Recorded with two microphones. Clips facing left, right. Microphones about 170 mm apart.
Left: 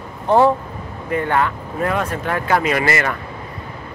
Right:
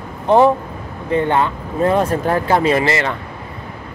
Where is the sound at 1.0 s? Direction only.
25° right (ahead or behind).